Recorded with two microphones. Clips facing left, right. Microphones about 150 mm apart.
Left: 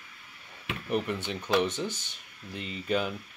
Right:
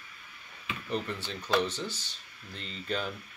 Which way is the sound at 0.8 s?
15° left (ahead or behind).